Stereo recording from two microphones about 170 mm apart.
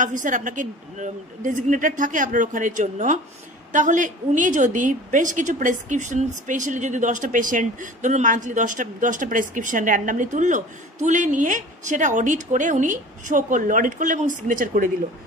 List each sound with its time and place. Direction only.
0.0 s a woman's voice: 50° right (ahead or behind)